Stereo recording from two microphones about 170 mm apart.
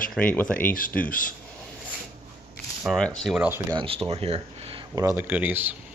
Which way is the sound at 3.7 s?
30° right (ahead or behind).